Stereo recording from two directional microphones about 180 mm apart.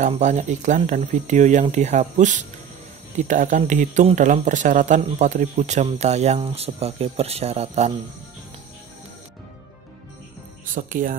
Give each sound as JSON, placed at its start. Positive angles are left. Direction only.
{"t": 0.0, "sound": "speech", "side_deg": -40}
{"t": 10.7, "sound": "speech", "side_deg": -50}